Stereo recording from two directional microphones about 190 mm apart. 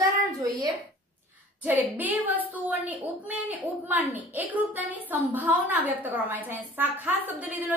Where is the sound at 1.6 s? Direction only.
10° right (ahead or behind).